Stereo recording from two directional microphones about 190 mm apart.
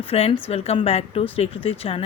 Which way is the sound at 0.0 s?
30° left (ahead or behind).